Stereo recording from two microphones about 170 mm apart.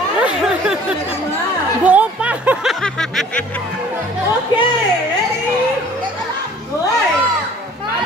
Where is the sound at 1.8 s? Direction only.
10° right (ahead or behind).